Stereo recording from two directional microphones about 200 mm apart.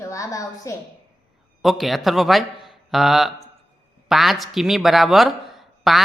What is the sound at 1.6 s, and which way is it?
A man's voice, centre (ahead or behind).